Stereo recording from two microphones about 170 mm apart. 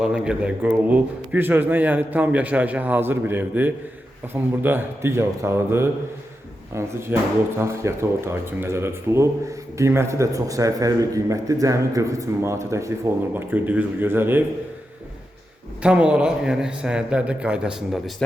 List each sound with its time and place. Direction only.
0.0 s speech: 5° right (ahead or behind)
15.8 s a man's voice: 5° right (ahead or behind)